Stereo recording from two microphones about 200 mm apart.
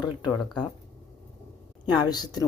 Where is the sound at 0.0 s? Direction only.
20° left (ahead or behind).